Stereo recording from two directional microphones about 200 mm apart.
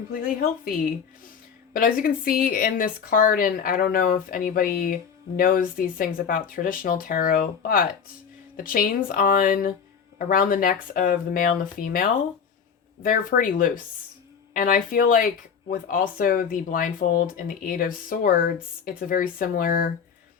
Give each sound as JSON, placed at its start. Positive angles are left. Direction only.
{"t": 0.1, "sound": "speech", "side_deg": 45}